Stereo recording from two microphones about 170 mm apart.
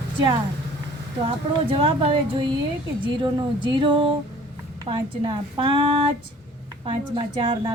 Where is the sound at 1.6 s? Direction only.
30° right (ahead or behind).